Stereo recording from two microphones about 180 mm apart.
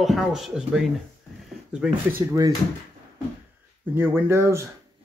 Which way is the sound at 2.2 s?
20° right (ahead or behind).